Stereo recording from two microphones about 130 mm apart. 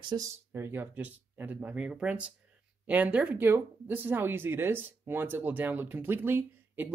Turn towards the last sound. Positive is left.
turn(degrees=-15)  # may be behind; listen again after turning